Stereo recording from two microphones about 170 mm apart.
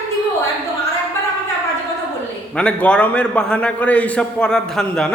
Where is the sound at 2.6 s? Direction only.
5° left (ahead or behind).